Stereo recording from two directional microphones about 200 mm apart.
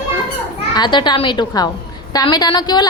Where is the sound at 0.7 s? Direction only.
20° left (ahead or behind).